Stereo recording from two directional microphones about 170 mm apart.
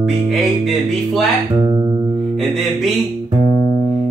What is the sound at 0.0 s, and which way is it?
Music, centre (ahead or behind).